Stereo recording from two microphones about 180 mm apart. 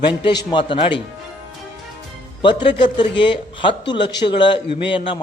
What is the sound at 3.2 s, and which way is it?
A man's voice, 25° left (ahead or behind).